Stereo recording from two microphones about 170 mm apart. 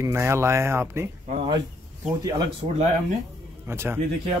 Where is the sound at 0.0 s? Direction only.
15° right (ahead or behind).